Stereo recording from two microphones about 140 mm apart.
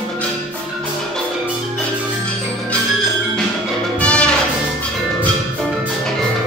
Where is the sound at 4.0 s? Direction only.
10° left (ahead or behind).